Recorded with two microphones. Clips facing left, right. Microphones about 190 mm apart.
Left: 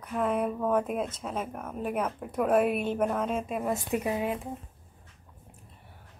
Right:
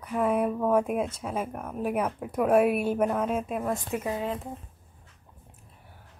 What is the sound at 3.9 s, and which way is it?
Speech, 15° left (ahead or behind).